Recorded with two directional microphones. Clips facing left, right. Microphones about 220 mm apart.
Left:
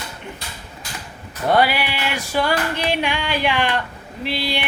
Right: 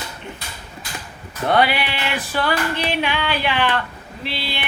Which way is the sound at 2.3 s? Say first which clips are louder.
Left 2 dB; 15° left (ahead or behind).